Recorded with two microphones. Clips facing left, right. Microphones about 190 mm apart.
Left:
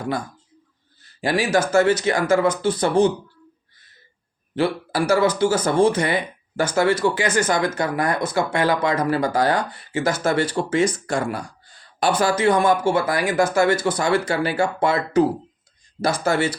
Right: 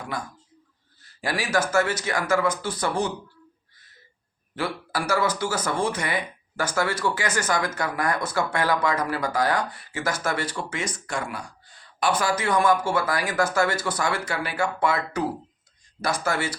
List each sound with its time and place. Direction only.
1.2 s speech: 25° left (ahead or behind)
4.5 s speech: 25° left (ahead or behind)